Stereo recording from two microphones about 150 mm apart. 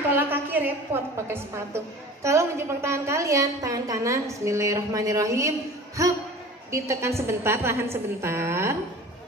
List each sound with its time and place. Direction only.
0.1 s a woman's voice: 15° right (ahead or behind)